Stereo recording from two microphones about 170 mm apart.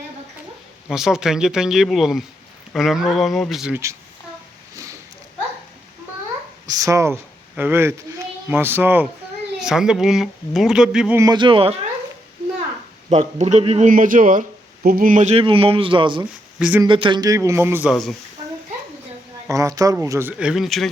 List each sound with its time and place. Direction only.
0.9 s speech: 5° right (ahead or behind)
4.7 s a sound: 20° right (ahead or behind)
6.7 s speech: 20° right (ahead or behind); by 11.2 s 5° right (ahead or behind)
11.2 s speech: 25° right (ahead or behind)
13.1 s a man's voice: 40° right (ahead or behind)
16.6 s speech: 5° right (ahead or behind)
16.8 s speech: 30° right (ahead or behind); by 17.9 s 10° right (ahead or behind)
19.5 s speech: 20° right (ahead or behind); by 20.9 s centre (ahead or behind)